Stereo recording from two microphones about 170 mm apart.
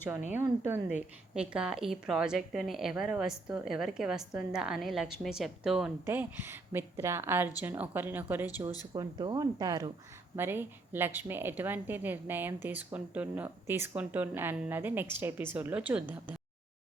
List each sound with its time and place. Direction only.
0.3 s a woman's voice: 15° right (ahead or behind)
8.9 s speech: 25° right (ahead or behind); by 16.3 s 10° right (ahead or behind)